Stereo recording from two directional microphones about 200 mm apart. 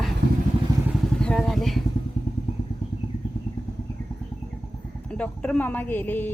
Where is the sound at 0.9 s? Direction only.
Centre (ahead or behind).